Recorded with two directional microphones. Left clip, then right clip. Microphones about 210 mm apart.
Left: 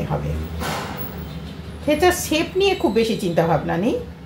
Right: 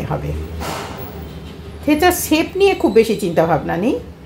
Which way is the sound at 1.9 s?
35° right (ahead or behind).